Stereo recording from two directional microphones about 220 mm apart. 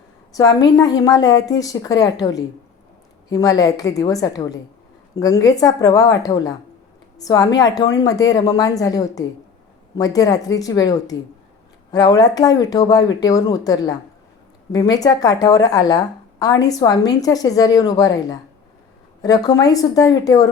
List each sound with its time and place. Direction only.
0.3 s a woman's voice: 15° left (ahead or behind)